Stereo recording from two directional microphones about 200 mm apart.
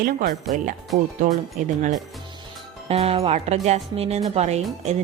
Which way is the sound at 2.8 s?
30° right (ahead or behind).